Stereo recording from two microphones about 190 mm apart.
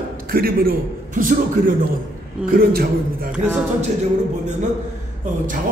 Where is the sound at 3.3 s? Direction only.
10° right (ahead or behind).